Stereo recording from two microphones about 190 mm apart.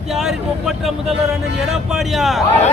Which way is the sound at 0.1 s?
Centre (ahead or behind).